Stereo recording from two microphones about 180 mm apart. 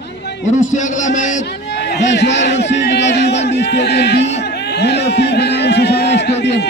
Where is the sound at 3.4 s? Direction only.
75° left (ahead or behind).